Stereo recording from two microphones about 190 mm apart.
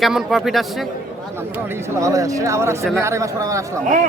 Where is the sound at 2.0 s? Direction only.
15° right (ahead or behind).